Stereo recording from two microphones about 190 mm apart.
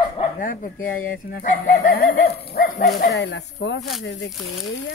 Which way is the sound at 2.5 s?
55° left (ahead or behind).